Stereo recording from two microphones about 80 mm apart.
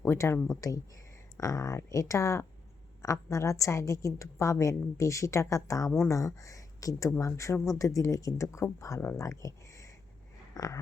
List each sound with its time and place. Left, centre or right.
0.0 s speech: left
0.6 s a woman's voice: left
10.5 s a sound: left